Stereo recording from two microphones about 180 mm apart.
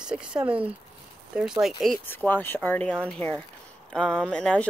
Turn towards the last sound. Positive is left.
turn(degrees=5)  # may be behind; listen again after turning